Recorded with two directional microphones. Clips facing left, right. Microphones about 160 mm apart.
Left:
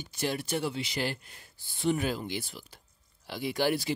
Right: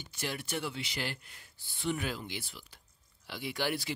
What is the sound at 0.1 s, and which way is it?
Speech, 35° left (ahead or behind).